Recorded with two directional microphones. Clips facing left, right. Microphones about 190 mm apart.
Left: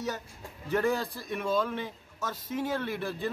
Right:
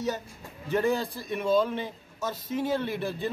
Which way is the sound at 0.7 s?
25° right (ahead or behind).